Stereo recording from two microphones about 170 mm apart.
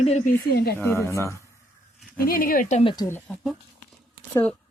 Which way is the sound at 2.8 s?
20° left (ahead or behind).